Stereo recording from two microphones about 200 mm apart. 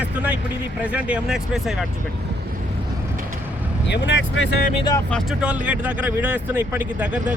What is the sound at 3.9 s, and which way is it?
Speech, 70° left (ahead or behind).